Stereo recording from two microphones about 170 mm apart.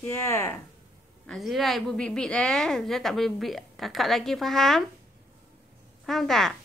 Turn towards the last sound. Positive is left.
turn(degrees=0)  # may be behind; listen again after turning